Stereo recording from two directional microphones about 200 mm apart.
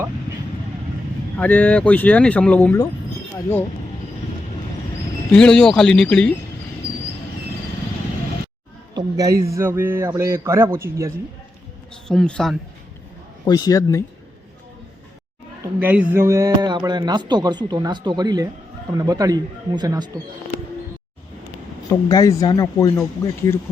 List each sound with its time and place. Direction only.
1.4 s speech: 10° left (ahead or behind)
5.3 s speech: 5° left (ahead or behind)
9.0 s a sound: 20° right (ahead or behind)
9.5 s a man's voice: 10° right (ahead or behind)
12.0 s speech: 5° left (ahead or behind)
13.4 s a man's voice: 20° left (ahead or behind)
15.8 s a man's voice: 10° right (ahead or behind)
21.8 s speech: 15° left (ahead or behind)